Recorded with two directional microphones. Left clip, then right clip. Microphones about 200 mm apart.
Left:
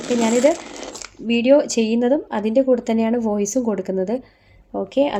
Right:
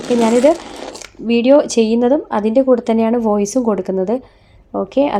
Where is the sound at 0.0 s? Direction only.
15° right (ahead or behind).